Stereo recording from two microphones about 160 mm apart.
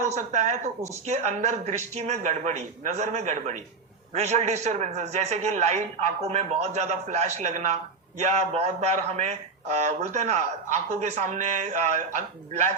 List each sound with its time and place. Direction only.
0.0 s a man's voice: 45° right (ahead or behind)